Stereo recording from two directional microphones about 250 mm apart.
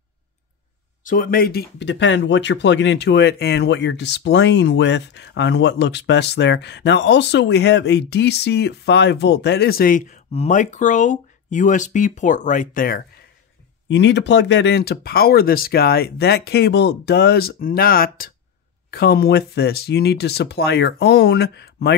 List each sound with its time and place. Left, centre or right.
1.0 s speech: left
13.8 s speech: left